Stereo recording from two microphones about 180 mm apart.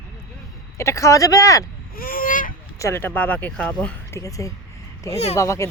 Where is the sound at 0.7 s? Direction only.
15° left (ahead or behind).